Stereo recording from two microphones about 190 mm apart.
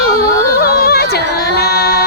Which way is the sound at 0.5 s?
55° left (ahead or behind).